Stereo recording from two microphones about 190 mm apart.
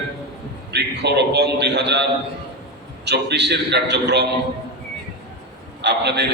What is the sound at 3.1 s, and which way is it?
A man's voice, 65° right (ahead or behind).